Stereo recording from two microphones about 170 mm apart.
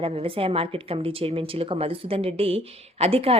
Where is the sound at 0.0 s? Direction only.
35° right (ahead or behind).